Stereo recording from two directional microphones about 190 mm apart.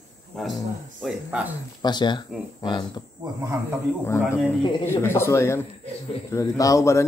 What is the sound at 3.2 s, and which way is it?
Speech, 15° right (ahead or behind).